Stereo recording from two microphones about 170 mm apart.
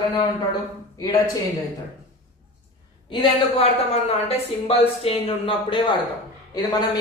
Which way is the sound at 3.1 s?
35° left (ahead or behind).